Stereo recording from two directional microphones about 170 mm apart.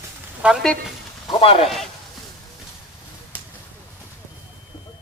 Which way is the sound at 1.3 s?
35° left (ahead or behind).